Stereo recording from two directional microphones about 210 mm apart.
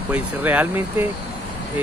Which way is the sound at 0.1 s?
10° right (ahead or behind).